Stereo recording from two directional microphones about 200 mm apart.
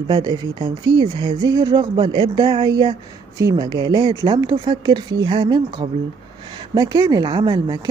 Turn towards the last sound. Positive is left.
turn(degrees=-20)  # may be behind; listen again after turning